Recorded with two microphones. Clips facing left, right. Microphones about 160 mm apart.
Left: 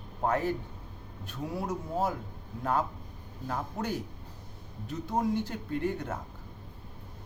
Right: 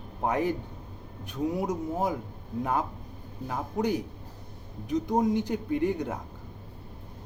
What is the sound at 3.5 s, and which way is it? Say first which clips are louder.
Speech: right 5 dB; 15° right (ahead or behind).